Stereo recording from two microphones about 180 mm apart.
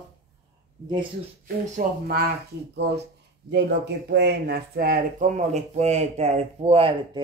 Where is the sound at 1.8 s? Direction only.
50° right (ahead or behind).